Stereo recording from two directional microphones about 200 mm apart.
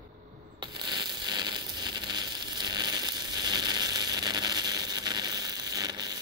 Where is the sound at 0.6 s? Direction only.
20° right (ahead or behind).